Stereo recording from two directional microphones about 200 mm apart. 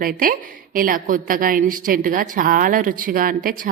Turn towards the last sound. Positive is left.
turn(degrees=-45)  # may be behind; listen again after turning